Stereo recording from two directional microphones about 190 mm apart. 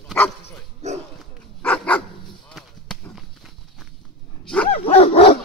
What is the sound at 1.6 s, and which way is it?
Dog, 10° left (ahead or behind).